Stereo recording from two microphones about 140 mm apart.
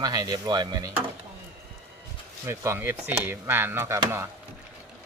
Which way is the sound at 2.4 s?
20° right (ahead or behind).